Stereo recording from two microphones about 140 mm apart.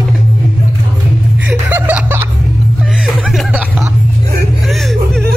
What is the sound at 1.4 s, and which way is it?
Chuckle, 15° right (ahead or behind).